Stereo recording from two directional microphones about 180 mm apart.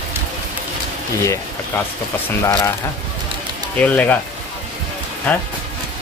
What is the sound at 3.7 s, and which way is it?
Speech, 10° left (ahead or behind).